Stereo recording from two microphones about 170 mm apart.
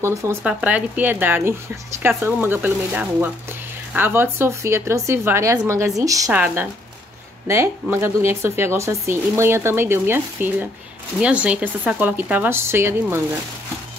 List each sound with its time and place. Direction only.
0.0 s a woman's voice: 15° right (ahead or behind)